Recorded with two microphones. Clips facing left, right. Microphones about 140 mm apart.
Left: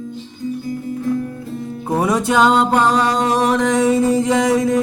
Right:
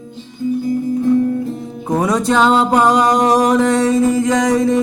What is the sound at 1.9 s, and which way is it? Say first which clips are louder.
Music: right 2 dB; 10° left (ahead or behind).